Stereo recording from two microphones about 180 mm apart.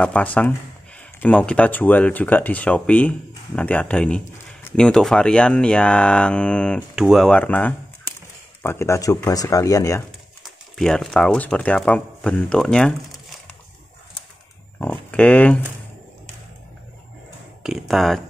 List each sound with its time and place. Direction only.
0.0 s speech: 5° left (ahead or behind)
10.8 s speech: centre (ahead or behind)
14.8 s speech: 10° left (ahead or behind)
17.6 s speech: centre (ahead or behind)